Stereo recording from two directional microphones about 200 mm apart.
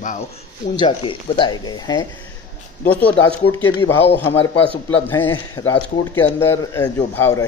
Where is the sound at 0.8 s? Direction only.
25° left (ahead or behind).